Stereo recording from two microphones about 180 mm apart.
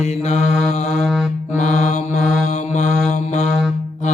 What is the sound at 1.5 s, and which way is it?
Mantra, 40° left (ahead or behind).